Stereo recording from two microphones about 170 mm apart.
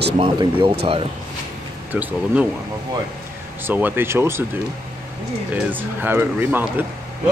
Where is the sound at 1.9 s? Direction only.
10° right (ahead or behind).